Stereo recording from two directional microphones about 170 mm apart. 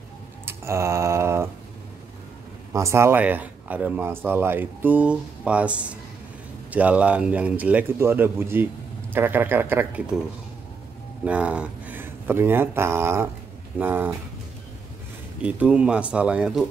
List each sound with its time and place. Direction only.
0.5 s mantra: 15° right (ahead or behind)
2.7 s speech: 15° right (ahead or behind)
11.2 s speech: 5° right (ahead or behind)
15.4 s speech: 5° right (ahead or behind)